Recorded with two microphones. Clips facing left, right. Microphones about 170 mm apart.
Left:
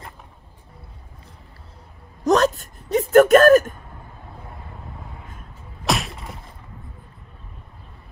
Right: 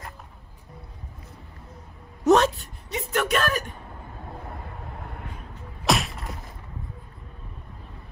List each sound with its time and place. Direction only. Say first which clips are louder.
2.2 s a sound: left 1 dB; 40° left (ahead or behind)
5.0 s vehicle: right 2 dB; 65° right (ahead or behind)
5.9 s whip: even; centre (ahead or behind)